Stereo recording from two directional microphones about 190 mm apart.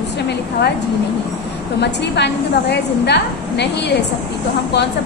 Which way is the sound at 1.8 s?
65° left (ahead or behind).